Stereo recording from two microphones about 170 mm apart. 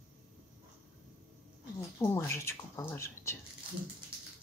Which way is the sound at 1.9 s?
15° left (ahead or behind).